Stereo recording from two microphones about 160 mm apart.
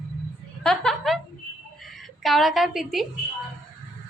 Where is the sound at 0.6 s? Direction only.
5° left (ahead or behind).